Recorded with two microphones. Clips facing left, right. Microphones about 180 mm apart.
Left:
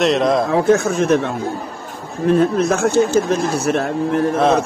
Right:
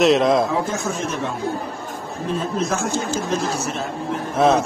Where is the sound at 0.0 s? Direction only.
Centre (ahead or behind).